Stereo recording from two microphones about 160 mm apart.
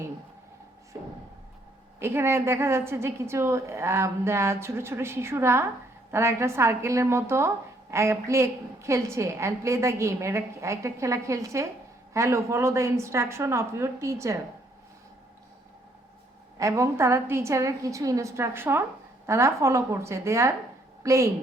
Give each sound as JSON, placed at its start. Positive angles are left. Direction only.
{"t": 0.9, "sound": "a sound", "side_deg": -20}
{"t": 2.0, "sound": "speech", "side_deg": -15}
{"t": 16.6, "sound": "a woman's voice", "side_deg": -20}